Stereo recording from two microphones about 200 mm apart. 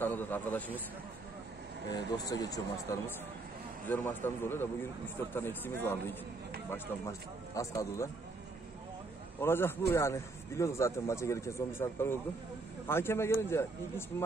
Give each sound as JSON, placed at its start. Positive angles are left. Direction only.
{"t": 0.0, "sound": "a man's voice", "side_deg": 10}
{"t": 2.0, "sound": "a man's voice", "side_deg": 20}
{"t": 9.4, "sound": "a man's voice", "side_deg": 10}